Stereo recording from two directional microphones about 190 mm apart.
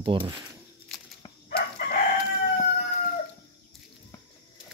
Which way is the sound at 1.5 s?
50° left (ahead or behind).